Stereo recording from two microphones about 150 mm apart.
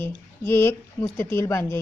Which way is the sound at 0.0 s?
15° left (ahead or behind).